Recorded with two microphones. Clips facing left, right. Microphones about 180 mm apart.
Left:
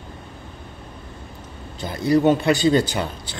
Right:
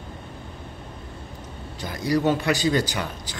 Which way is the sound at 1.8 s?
25° left (ahead or behind).